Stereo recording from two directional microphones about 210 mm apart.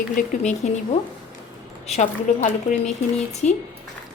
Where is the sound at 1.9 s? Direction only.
35° left (ahead or behind).